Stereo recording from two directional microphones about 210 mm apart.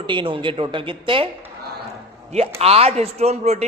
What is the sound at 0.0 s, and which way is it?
A man's voice, 25° right (ahead or behind).